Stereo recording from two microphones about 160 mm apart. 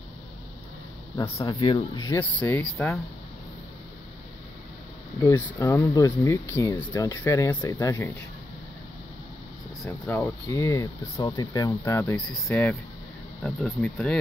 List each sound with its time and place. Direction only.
1.1 s speech: 20° left (ahead or behind)
2.1 s speech: 10° left (ahead or behind)
5.2 s speech: 20° left (ahead or behind)
9.8 s speech: 15° left (ahead or behind)
11.8 s speech: 15° left (ahead or behind)